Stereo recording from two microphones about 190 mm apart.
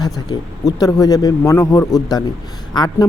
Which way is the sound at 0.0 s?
20° left (ahead or behind).